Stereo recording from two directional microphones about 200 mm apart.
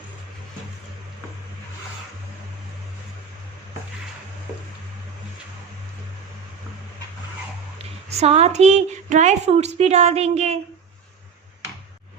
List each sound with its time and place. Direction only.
7.8 s a woman's voice: 30° right (ahead or behind)